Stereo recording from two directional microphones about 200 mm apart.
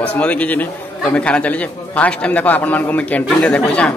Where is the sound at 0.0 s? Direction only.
5° left (ahead or behind).